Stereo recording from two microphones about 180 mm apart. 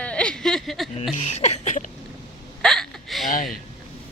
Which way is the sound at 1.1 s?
40° left (ahead or behind).